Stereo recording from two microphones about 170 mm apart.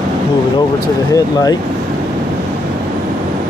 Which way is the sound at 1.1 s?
20° left (ahead or behind).